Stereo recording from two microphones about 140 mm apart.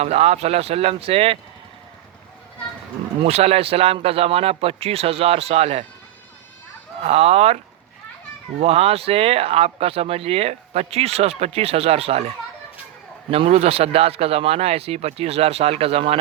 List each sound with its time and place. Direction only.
0.0 s speech: 50° right (ahead or behind)
3.2 s speech: 45° right (ahead or behind)
7.0 s speech: 45° right (ahead or behind)
8.6 s speech: 45° right (ahead or behind)
13.3 s speech: 45° right (ahead or behind)